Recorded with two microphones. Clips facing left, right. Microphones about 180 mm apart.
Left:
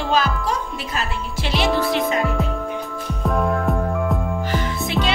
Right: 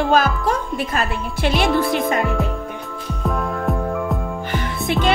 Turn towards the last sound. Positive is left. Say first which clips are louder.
# right 3 dB
turn(degrees=0)  # may be behind; listen again after turning